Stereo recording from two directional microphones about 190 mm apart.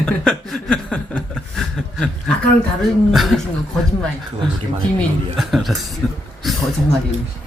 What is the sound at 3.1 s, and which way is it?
Speech, centre (ahead or behind).